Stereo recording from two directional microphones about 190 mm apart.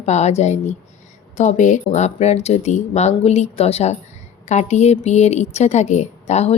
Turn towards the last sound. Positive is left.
turn(degrees=35)  # may be behind; listen again after turning